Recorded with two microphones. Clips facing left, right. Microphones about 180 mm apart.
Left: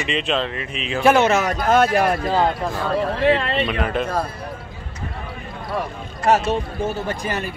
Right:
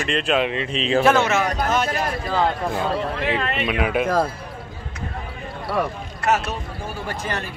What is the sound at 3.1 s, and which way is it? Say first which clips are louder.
Speech: left 6 dB; 30° left (ahead or behind).